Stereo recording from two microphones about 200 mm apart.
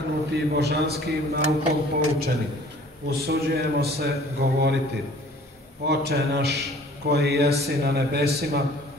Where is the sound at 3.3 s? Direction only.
50° right (ahead or behind).